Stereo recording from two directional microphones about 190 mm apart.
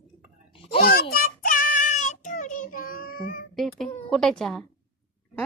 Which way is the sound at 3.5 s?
Centre (ahead or behind).